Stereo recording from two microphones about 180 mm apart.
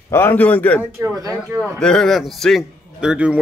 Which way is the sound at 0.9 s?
15° right (ahead or behind).